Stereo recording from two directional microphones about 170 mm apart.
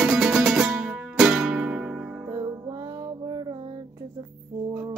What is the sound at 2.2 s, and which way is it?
Music, 20° right (ahead or behind).